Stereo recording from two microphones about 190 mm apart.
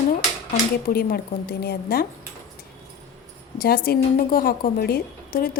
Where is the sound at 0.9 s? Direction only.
50° left (ahead or behind).